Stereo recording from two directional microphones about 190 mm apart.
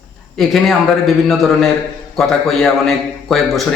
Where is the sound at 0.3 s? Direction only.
Centre (ahead or behind).